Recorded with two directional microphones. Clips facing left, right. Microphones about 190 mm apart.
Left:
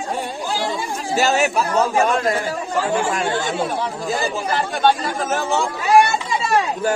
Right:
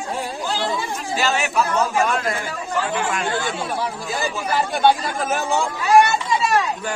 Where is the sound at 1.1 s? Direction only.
40° left (ahead or behind).